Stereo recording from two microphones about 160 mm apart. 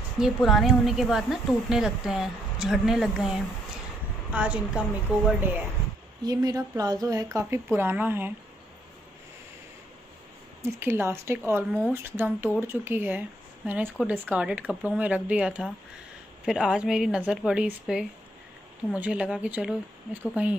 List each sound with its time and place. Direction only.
0.2 s a woman's voice: centre (ahead or behind)
6.2 s speech: 20° right (ahead or behind)
10.6 s a woman's voice: 15° right (ahead or behind)